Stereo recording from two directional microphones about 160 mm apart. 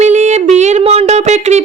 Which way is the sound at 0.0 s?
45° right (ahead or behind).